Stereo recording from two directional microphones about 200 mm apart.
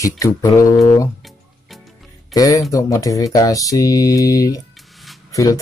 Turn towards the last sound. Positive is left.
turn(degrees=15)  # may be behind; listen again after turning